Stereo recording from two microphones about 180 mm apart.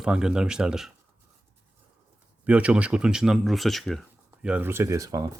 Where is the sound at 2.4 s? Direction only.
5° right (ahead or behind).